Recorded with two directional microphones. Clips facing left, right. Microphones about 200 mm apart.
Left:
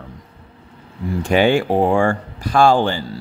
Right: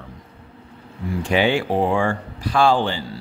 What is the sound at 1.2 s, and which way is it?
Speech, 45° left (ahead or behind).